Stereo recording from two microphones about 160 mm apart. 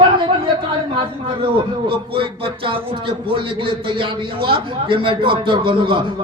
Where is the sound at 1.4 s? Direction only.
35° right (ahead or behind).